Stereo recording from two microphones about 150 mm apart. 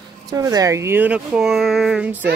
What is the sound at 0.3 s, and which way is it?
Speech, 25° right (ahead or behind).